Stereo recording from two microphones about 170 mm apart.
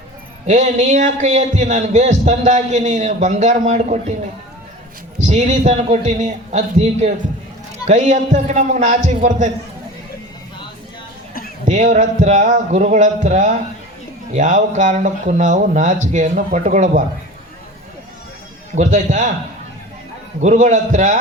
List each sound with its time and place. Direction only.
0.4 s a man's voice: 45° right (ahead or behind)
5.2 s a man's voice: 45° right (ahead or behind)
11.6 s a man's voice: 45° right (ahead or behind)
18.7 s a man's voice: 50° right (ahead or behind)
20.4 s a man's voice: 45° right (ahead or behind)